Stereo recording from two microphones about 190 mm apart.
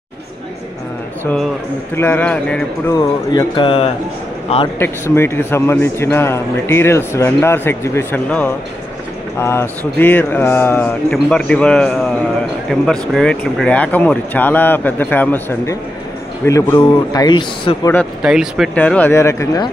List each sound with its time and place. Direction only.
1.2 s a sound: centre (ahead or behind)
2.0 s a man's voice: 10° left (ahead or behind)
2.9 s speech: 20° left (ahead or behind)
4.7 s a man's voice: 10° left (ahead or behind)
18.2 s speech: 5° right (ahead or behind)
18.8 s a man's voice: 10° left (ahead or behind)